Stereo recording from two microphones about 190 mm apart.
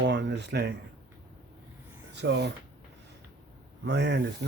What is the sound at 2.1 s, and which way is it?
Speech, 65° right (ahead or behind).